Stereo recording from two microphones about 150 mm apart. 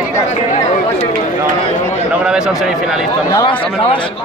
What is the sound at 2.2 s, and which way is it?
Speech, 5° right (ahead or behind).